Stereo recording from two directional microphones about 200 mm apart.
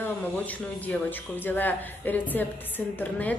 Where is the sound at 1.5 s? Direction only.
10° left (ahead or behind).